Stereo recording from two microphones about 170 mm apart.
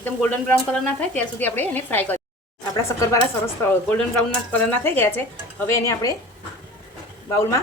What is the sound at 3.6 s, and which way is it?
A woman's voice, 10° left (ahead or behind).